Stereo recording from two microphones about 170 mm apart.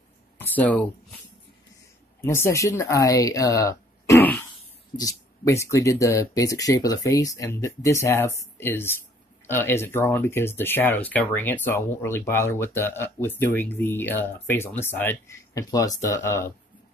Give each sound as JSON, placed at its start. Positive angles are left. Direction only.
{"t": 0.4, "sound": "speech", "side_deg": 10}
{"t": 2.2, "sound": "speech", "side_deg": 15}